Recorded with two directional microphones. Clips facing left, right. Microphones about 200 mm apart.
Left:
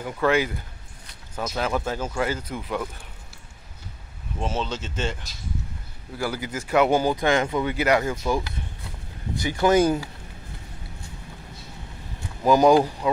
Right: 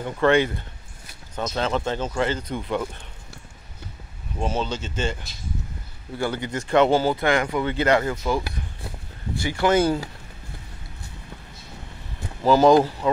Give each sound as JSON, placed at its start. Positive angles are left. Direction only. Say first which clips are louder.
{"t": 0.0, "sound": "speech", "louder": "right 3 dB", "side_deg": 5}
{"t": 4.4, "sound": "speech", "louder": "right 2 dB", "side_deg": 0}
{"t": 6.1, "sound": "speech", "louder": "right 2 dB", "side_deg": 5}
{"t": 12.4, "sound": "speech", "louder": "right 1 dB", "side_deg": 15}